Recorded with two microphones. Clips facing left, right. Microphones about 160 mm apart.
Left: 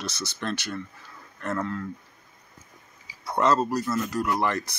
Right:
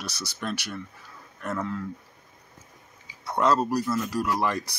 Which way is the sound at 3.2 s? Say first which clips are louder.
Even; 5° right (ahead or behind).